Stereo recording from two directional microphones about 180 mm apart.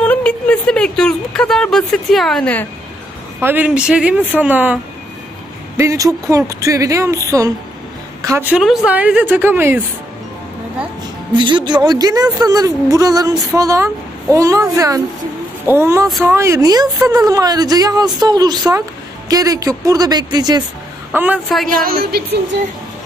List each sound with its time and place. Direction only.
0.0 s speech: 5° left (ahead or behind)
3.3 s a woman's voice: 10° right (ahead or behind)
5.8 s a woman's voice: 15° right (ahead or behind)
11.3 s a woman's voice: 25° right (ahead or behind)
16.1 s speech: centre (ahead or behind)
16.3 s a woman's voice: 15° right (ahead or behind)
21.1 s a woman's voice: 10° right (ahead or behind)
21.5 s speech: centre (ahead or behind)
21.7 s music: 55° right (ahead or behind)